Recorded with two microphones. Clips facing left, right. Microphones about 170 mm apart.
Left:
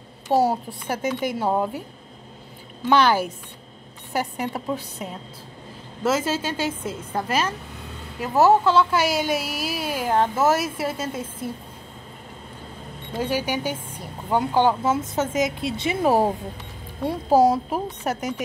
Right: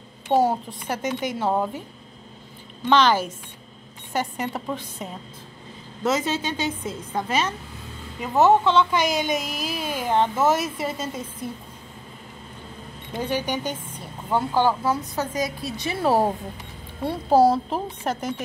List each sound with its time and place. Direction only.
0.5 s speech: 10° left (ahead or behind)
2.8 s speech: 10° left (ahead or behind)
13.2 s speech: 10° left (ahead or behind)